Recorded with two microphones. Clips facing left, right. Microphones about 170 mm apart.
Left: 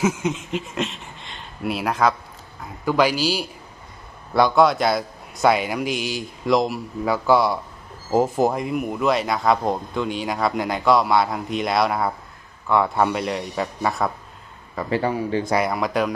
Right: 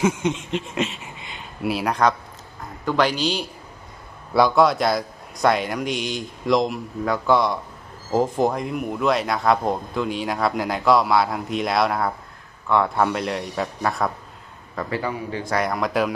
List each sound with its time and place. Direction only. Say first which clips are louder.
0.0 s a man's voice: right 1 dB; 5° left (ahead or behind)
14.9 s a man's voice: left 6 dB; 30° left (ahead or behind)
15.4 s speech: left 2 dB; 10° left (ahead or behind)